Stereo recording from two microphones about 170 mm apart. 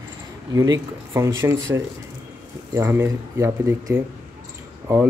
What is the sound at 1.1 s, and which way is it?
Speech, 15° right (ahead or behind).